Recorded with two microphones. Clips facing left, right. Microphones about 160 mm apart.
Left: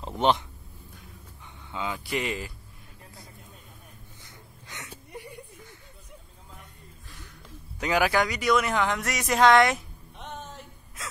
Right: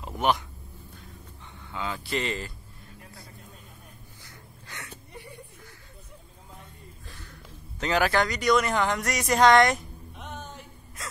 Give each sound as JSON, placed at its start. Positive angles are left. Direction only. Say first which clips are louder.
{"t": 0.2, "sound": "speech", "louder": "left 2 dB", "side_deg": 30}
{"t": 1.7, "sound": "speech", "louder": "even", "side_deg": 15}
{"t": 4.6, "sound": "a sound", "louder": "even", "side_deg": 15}
{"t": 7.8, "sound": "speech", "louder": "even", "side_deg": 10}